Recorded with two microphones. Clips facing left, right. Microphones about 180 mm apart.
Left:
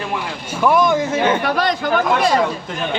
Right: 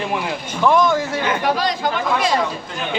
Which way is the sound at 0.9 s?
20° left (ahead or behind).